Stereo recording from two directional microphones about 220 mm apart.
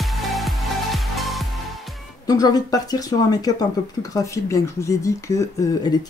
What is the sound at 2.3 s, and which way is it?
Speech, 15° left (ahead or behind).